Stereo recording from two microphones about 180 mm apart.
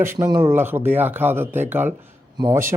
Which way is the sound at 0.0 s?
15° right (ahead or behind).